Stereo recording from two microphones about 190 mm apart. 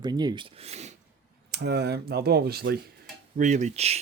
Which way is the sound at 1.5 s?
60° right (ahead or behind).